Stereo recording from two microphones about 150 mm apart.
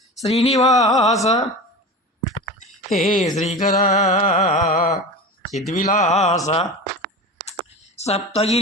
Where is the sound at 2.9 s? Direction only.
55° left (ahead or behind).